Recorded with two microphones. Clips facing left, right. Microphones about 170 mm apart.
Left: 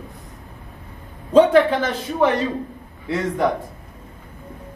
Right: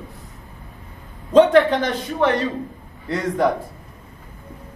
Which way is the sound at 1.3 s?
10° left (ahead or behind).